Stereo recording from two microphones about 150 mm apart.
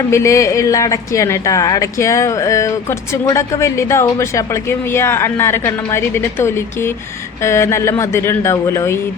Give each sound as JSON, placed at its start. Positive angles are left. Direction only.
{"t": 0.1, "sound": "speech", "side_deg": 20}